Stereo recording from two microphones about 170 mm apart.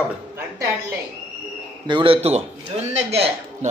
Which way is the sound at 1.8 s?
30° right (ahead or behind).